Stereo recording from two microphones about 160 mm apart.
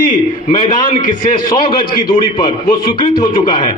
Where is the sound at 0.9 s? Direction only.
55° left (ahead or behind).